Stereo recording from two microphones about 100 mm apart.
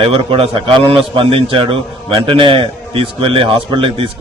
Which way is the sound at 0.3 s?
70° right (ahead or behind).